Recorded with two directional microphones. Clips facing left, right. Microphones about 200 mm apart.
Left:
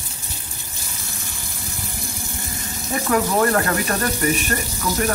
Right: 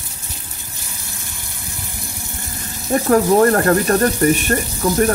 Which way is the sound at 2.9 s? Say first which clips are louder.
Right 7 dB; 40° right (ahead or behind).